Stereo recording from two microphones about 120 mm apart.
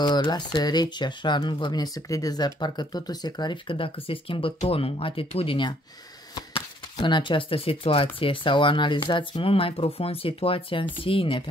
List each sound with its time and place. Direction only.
0.0 s speech: 35° left (ahead or behind)
7.0 s speech: 40° left (ahead or behind)